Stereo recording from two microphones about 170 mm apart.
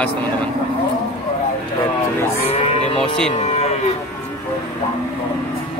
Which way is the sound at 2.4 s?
35° left (ahead or behind).